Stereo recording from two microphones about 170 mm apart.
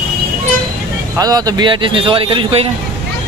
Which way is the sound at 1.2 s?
20° right (ahead or behind).